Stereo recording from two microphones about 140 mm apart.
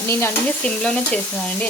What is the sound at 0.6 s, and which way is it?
Stir, 5° left (ahead or behind).